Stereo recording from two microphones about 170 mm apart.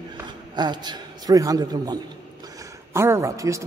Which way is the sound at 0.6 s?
25° right (ahead or behind).